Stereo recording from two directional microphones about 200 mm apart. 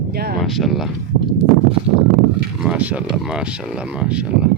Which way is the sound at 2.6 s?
5° right (ahead or behind).